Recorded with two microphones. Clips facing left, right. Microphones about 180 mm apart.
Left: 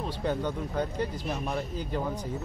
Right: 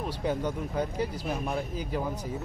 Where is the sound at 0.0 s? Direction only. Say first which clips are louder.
Even; 10° right (ahead or behind).